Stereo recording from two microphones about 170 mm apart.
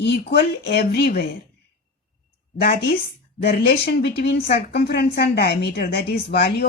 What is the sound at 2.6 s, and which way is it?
A woman's voice, 65° left (ahead or behind).